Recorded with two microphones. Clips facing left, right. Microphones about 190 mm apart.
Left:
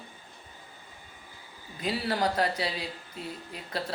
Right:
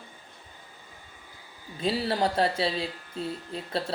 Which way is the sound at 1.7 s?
25° right (ahead or behind).